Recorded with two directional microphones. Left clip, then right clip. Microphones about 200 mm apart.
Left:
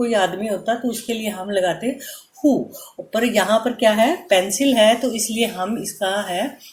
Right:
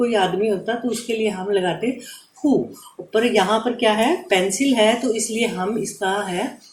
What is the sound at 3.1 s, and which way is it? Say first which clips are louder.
Speech: even; 35° left (ahead or behind).